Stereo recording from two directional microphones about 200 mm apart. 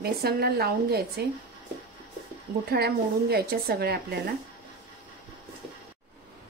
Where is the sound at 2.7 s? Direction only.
55° right (ahead or behind).